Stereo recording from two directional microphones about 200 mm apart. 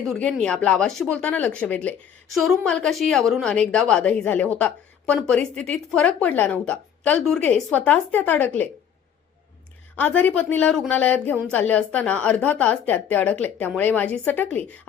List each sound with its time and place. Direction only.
0.1 s a woman's voice: 5° left (ahead or behind)
9.9 s a woman's voice: 5° left (ahead or behind)